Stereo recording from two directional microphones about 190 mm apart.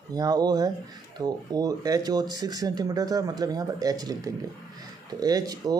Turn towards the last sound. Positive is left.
turn(degrees=-20)  # may be behind; listen again after turning